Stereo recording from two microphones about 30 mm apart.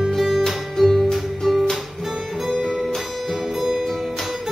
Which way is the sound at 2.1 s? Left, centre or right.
Centre.